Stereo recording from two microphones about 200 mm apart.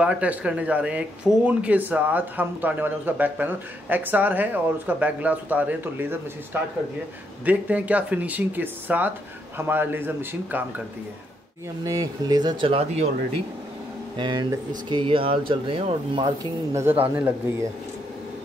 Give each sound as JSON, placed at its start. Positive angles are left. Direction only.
{"t": 0.0, "sound": "speech", "side_deg": -5}
{"t": 11.8, "sound": "speech", "side_deg": -15}
{"t": 14.1, "sound": "speech", "side_deg": -20}
{"t": 17.2, "sound": "speech", "side_deg": -10}